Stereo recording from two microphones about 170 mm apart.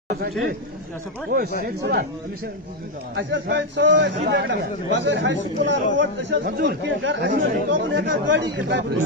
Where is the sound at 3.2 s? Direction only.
90° right.